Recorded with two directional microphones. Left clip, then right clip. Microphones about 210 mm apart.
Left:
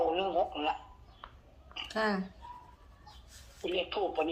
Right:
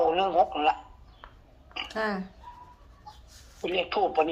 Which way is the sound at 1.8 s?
5° right (ahead or behind).